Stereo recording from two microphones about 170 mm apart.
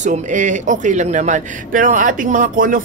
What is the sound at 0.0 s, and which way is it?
A man's voice, 45° right (ahead or behind).